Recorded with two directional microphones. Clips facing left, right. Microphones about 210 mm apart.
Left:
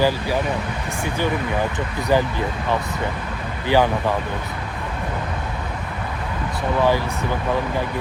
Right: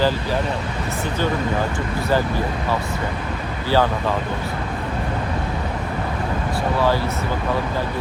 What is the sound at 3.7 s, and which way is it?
Speech, 15° left (ahead or behind).